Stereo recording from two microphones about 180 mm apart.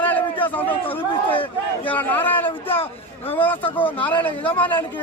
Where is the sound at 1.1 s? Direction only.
30° left (ahead or behind).